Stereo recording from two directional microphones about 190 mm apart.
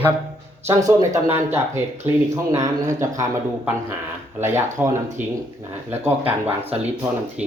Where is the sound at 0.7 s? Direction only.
15° right (ahead or behind).